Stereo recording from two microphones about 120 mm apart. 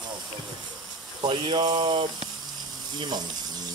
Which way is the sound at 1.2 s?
40° right (ahead or behind).